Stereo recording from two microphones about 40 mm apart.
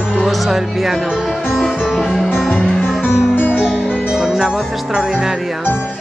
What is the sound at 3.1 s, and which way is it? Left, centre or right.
Music, left.